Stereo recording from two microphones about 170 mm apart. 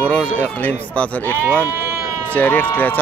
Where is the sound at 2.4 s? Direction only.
10° left (ahead or behind).